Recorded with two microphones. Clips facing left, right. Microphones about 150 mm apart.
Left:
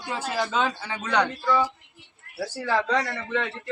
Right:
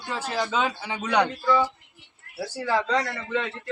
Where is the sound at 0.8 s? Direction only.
15° right (ahead or behind).